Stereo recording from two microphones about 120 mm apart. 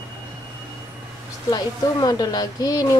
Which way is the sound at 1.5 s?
30° left (ahead or behind).